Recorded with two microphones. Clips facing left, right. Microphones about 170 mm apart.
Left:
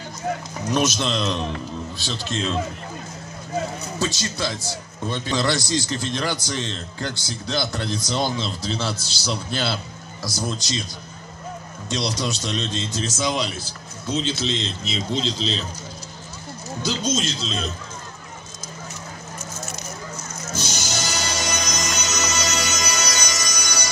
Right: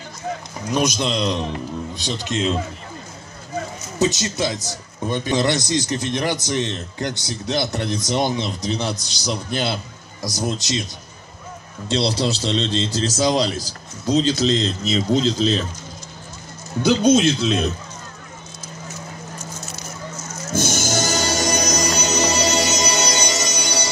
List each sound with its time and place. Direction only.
0.7 s a man's voice: 10° right (ahead or behind)
4.0 s a man's voice: 20° right (ahead or behind)
11.9 s a man's voice: 30° right (ahead or behind); by 15.6 s 50° right (ahead or behind)
16.8 s a man's voice: 60° right (ahead or behind)
20.5 s music: 50° right (ahead or behind); by 23.9 s 30° right (ahead or behind)